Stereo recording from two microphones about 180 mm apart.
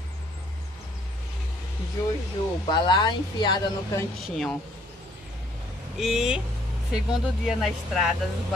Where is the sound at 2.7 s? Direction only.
25° left (ahead or behind).